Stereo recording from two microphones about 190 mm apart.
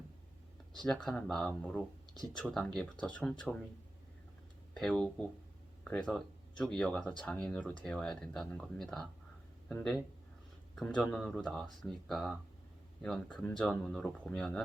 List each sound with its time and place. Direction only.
0.9 s speech: 5° left (ahead or behind)
4.8 s speech: 5° left (ahead or behind)